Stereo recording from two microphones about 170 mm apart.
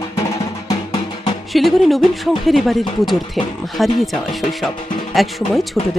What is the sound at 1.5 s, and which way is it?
Speech, centre (ahead or behind).